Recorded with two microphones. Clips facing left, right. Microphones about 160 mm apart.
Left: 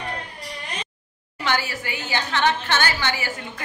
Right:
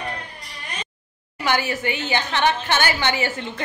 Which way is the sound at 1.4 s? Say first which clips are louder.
Right 3 dB; 20° right (ahead or behind).